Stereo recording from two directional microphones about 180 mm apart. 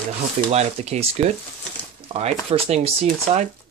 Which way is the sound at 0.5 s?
35° right (ahead or behind).